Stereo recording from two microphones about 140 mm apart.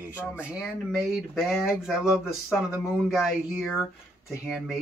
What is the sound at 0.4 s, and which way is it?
Speech, 10° right (ahead or behind).